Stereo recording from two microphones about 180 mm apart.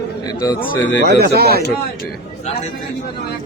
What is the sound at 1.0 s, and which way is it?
Speech, 60° right (ahead or behind).